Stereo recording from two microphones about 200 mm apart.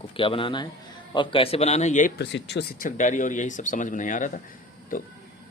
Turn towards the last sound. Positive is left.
turn(degrees=45)  # may be behind; listen again after turning